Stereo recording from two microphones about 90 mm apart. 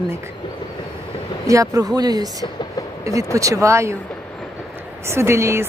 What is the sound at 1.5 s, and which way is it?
Speech, 40° right (ahead or behind).